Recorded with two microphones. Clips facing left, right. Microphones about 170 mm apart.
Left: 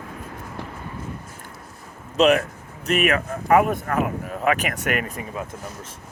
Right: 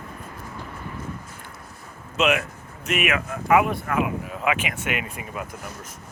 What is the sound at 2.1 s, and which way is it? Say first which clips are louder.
Speech: left 5 dB; 35° left (ahead or behind).